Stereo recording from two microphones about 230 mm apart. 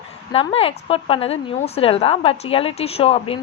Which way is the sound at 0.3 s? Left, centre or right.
Left.